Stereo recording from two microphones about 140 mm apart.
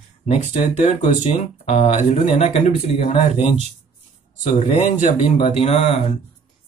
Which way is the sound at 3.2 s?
55° right (ahead or behind).